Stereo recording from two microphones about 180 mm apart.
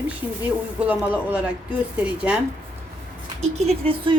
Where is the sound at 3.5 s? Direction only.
35° right (ahead or behind).